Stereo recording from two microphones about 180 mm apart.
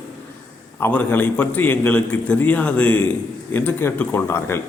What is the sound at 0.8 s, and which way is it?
A man's voice, 10° left (ahead or behind).